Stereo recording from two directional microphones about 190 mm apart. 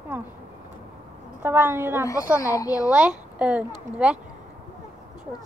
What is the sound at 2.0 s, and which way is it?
Speech, 20° left (ahead or behind).